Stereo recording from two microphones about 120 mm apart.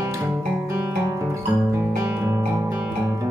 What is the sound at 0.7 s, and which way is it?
Music, 25° right (ahead or behind).